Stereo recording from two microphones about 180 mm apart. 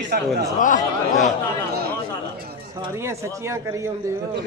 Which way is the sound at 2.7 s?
15° right (ahead or behind).